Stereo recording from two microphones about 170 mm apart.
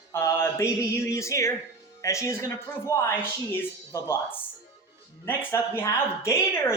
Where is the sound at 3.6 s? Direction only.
15° left (ahead or behind).